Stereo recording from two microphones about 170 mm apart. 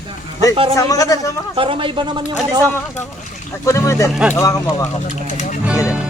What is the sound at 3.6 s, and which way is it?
Speech, 15° left (ahead or behind).